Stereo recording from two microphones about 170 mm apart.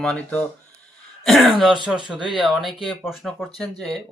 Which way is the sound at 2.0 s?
30° left (ahead or behind).